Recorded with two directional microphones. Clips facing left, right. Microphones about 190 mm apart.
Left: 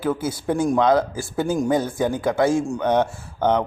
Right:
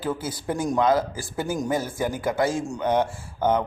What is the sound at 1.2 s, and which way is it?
Speech, 25° left (ahead or behind).